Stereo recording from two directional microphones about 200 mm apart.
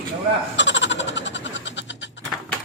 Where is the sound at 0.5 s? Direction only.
65° left (ahead or behind).